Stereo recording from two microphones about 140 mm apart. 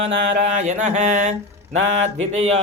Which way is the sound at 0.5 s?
60° right (ahead or behind).